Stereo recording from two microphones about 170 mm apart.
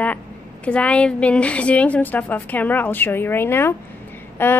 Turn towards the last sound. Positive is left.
turn(degrees=10)  # may be behind; listen again after turning